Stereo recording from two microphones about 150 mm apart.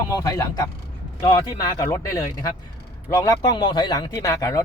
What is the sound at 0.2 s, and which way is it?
Speech, 25° left (ahead or behind).